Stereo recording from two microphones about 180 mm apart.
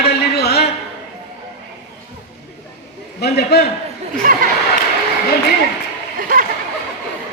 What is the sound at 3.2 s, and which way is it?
Speech, 65° left (ahead or behind).